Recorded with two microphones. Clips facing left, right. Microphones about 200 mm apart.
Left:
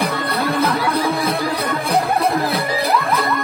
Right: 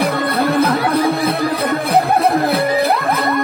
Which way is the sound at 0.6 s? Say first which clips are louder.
Right 3 dB; 55° right (ahead or behind).